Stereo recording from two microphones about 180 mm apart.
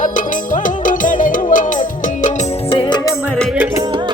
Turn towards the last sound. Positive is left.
turn(degrees=25)  # may be behind; listen again after turning